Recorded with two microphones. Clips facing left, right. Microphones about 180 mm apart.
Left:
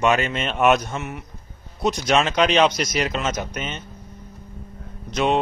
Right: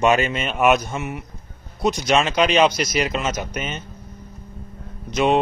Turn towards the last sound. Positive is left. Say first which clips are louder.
# right 2 dB
turn(degrees=0)  # may be behind; listen again after turning